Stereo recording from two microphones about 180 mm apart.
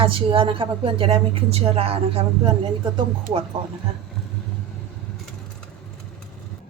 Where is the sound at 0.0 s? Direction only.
30° right (ahead or behind).